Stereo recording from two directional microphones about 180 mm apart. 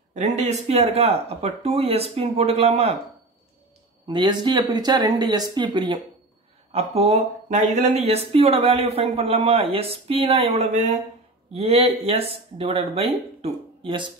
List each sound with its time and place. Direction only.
0.1 s speech: 40° right (ahead or behind)
4.1 s speech: 25° right (ahead or behind)